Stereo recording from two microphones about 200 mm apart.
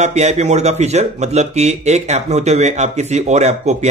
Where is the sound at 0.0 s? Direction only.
35° right (ahead or behind).